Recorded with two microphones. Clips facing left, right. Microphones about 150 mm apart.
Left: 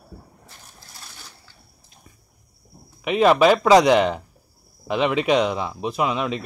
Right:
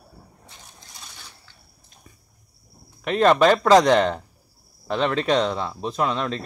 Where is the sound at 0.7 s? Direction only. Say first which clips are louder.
Left 2 dB; 5° left (ahead or behind).